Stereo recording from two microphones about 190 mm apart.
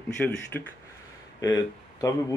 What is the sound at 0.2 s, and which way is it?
A man's voice, 10° left (ahead or behind).